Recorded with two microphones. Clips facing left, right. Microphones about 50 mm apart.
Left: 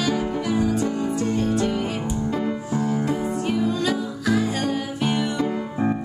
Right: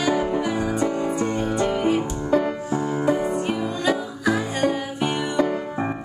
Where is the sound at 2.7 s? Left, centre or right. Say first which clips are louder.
Right 2 dB; centre.